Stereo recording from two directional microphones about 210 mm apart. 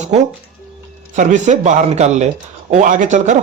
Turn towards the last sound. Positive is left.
turn(degrees=-35)  # may be behind; listen again after turning